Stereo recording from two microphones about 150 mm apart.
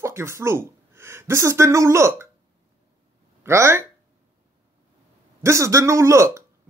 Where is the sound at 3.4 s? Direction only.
20° right (ahead or behind).